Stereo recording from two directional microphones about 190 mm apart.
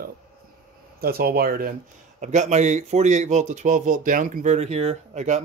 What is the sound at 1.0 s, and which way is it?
Speech, 55° right (ahead or behind).